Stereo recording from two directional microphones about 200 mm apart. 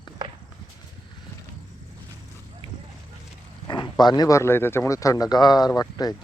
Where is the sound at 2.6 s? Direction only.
25° left (ahead or behind).